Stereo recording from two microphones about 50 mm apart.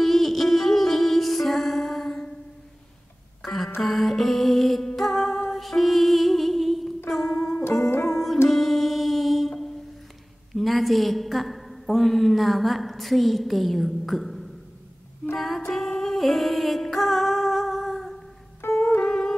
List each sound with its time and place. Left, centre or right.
0.0 s music: centre
3.4 s a sound: centre
3.8 s music: centre
7.9 s music: left
8.5 s music: centre
10.5 s a sound: centre
15.7 s music: centre
18.6 s music: left
19.0 s music: centre